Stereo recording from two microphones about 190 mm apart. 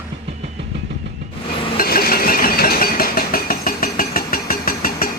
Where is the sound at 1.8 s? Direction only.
50° left (ahead or behind).